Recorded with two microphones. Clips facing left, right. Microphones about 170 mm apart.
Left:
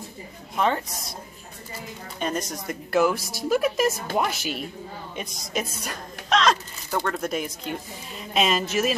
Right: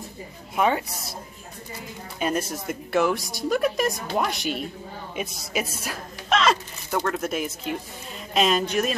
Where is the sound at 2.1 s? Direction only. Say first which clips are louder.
Right 2 dB; 5° right (ahead or behind).